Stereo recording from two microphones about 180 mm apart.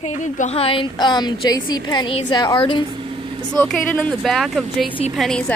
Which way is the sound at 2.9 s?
30° right (ahead or behind).